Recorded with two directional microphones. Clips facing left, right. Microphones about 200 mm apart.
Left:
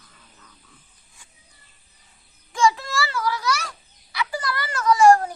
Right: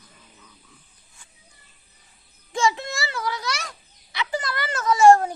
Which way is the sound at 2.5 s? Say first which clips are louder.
Left 3 dB; 25° right (ahead or behind).